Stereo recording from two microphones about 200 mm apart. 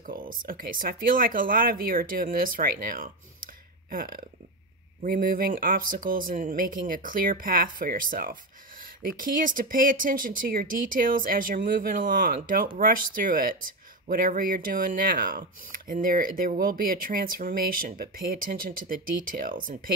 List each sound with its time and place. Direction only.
0.0 s speech: 45° right (ahead or behind)